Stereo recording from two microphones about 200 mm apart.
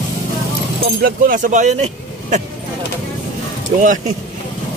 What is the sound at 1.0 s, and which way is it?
Speech, 45° right (ahead or behind).